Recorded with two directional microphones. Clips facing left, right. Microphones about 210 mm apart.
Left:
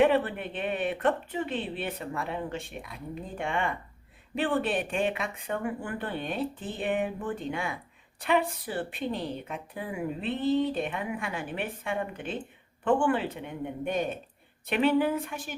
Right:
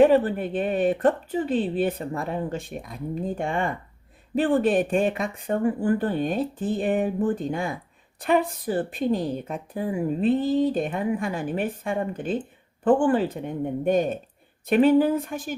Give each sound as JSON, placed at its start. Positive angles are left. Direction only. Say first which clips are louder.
{"t": 0.0, "sound": "a woman's voice", "louder": "right 6 dB", "side_deg": -40}